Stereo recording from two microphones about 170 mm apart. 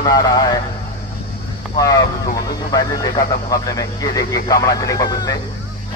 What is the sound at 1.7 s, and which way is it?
Speech, 20° left (ahead or behind).